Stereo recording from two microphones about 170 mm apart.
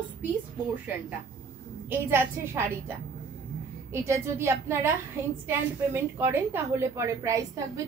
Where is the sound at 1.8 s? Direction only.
15° right (ahead or behind).